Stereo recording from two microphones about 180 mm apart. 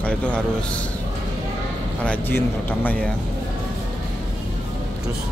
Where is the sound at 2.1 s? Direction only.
10° left (ahead or behind).